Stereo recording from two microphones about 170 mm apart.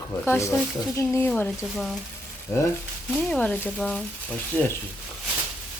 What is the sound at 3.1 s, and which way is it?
Speech, 5° left (ahead or behind).